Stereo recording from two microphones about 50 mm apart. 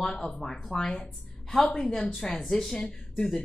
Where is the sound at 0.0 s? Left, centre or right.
Centre.